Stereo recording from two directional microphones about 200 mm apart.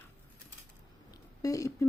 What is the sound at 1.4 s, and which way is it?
Speech, 15° left (ahead or behind).